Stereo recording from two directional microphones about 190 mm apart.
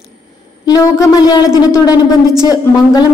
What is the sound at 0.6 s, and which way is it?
Speech, 20° left (ahead or behind).